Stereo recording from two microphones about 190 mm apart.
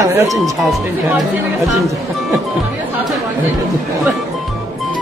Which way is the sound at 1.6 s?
Centre (ahead or behind).